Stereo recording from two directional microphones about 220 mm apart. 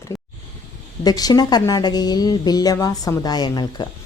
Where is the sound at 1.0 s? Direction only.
15° left (ahead or behind).